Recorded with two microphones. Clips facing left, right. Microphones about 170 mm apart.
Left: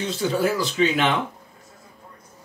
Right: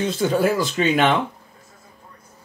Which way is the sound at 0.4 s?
50° right (ahead or behind).